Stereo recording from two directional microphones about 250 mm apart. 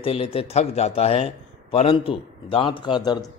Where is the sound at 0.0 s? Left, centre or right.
Left.